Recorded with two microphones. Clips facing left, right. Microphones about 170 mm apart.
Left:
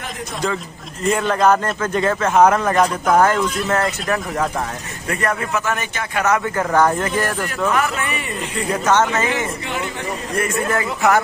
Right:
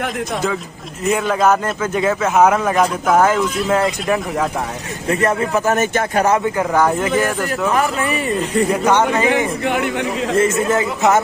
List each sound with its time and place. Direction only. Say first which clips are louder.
1.0 s a man's voice: right 1 dB; 5° right (ahead or behind)
5.0 s speech: right 5 dB; 25° right (ahead or behind); by 6.2 s 40° right (ahead or behind)
6.4 s a man's voice: right 1 dB; 10° right (ahead or behind)
7.7 s speech: right 3 dB; 35° right (ahead or behind)
8.8 s a man's voice: left 2 dB; 15° right (ahead or behind)
9.6 s a man's voice: right 7 dB; 60° right (ahead or behind)
10.3 s speech: right 5 dB; 25° right (ahead or behind)